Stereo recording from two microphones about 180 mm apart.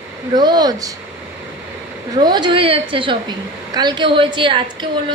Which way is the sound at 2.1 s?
25° right (ahead or behind).